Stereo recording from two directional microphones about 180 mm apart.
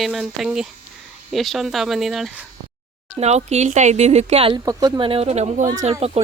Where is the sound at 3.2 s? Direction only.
35° right (ahead or behind).